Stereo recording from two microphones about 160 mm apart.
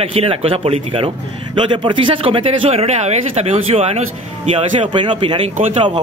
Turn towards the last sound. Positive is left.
turn(degrees=-30)  # may be behind; listen again after turning